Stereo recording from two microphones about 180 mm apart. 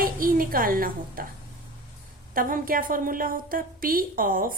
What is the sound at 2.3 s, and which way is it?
A woman's voice, 50° right (ahead or behind).